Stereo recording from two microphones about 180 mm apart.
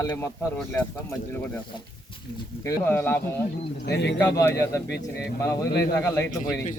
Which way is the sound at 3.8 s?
70° left (ahead or behind).